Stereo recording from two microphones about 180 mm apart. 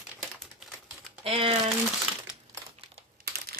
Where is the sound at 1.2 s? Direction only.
30° right (ahead or behind).